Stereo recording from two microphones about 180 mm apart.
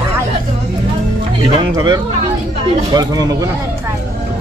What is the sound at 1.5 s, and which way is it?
Speech, 25° right (ahead or behind).